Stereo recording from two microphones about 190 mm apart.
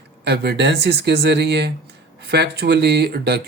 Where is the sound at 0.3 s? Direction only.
60° right (ahead or behind).